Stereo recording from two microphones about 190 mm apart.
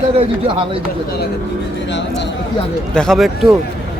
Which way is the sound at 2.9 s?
Centre (ahead or behind).